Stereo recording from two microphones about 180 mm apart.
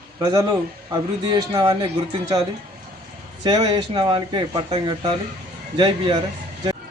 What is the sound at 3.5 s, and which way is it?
Speech, 20° right (ahead or behind).